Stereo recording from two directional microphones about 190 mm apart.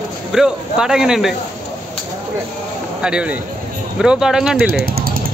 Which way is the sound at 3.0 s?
5° right (ahead or behind).